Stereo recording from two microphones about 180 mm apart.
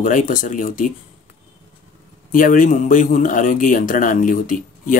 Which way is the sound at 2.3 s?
50° left (ahead or behind).